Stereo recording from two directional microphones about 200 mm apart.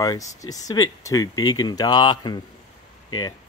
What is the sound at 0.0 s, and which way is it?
Speech, 15° left (ahead or behind).